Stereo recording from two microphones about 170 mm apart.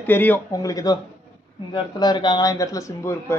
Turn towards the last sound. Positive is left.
turn(degrees=15)  # may be behind; listen again after turning